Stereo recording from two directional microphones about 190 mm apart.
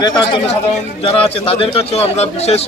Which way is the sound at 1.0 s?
30° left (ahead or behind).